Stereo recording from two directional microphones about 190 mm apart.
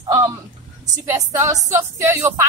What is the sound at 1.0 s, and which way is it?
Speech, 15° right (ahead or behind).